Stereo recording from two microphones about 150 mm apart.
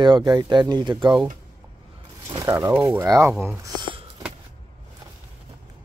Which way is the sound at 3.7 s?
35° right (ahead or behind).